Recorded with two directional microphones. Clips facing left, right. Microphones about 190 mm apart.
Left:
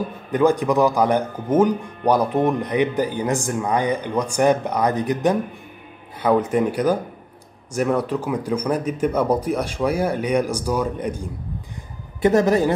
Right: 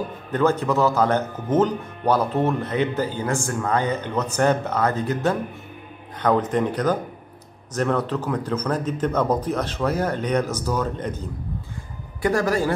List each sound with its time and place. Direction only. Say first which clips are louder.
0.3 s speech: left 3 dB; 15° left (ahead or behind)
12.2 s a man's voice: left 5 dB; 20° left (ahead or behind)